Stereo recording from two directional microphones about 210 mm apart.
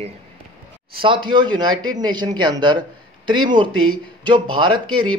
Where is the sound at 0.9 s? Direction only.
25° right (ahead or behind).